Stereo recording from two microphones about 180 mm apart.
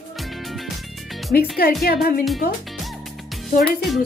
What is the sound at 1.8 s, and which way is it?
Music, 60° left (ahead or behind).